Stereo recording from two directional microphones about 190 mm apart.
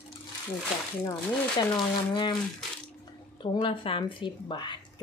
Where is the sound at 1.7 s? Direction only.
25° left (ahead or behind).